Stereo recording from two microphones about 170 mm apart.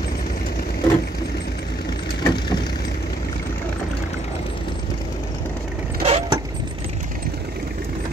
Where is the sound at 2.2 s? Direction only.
25° left (ahead or behind).